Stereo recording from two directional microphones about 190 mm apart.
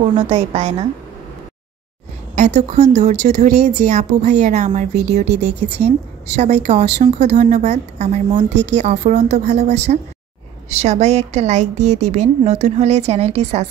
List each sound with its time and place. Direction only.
0.2 s a woman's voice: 30° right (ahead or behind)
2.3 s a woman's voice: 35° right (ahead or behind)